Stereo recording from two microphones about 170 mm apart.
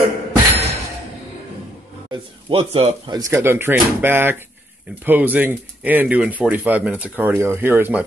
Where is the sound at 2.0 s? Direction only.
35° right (ahead or behind).